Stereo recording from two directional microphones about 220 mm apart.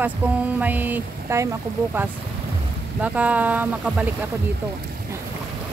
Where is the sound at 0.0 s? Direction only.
5° right (ahead or behind).